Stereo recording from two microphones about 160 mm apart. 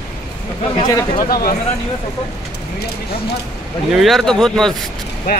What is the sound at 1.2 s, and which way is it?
Speech, 65° left (ahead or behind).